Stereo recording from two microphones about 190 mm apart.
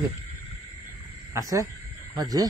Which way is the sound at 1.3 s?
15° right (ahead or behind).